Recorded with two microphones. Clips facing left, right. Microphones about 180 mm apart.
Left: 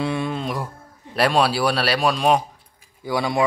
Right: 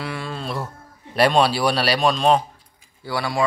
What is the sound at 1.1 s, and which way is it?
A man's voice, centre (ahead or behind).